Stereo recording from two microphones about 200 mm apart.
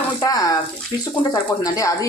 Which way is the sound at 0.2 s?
20° left (ahead or behind).